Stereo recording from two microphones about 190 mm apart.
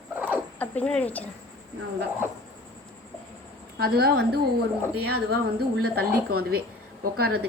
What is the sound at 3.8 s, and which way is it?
A woman's voice, 55° right (ahead or behind).